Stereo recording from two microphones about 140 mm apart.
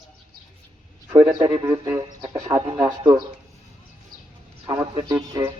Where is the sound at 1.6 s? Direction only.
20° right (ahead or behind).